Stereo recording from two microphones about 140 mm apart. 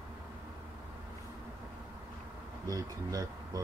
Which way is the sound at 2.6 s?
25° right (ahead or behind).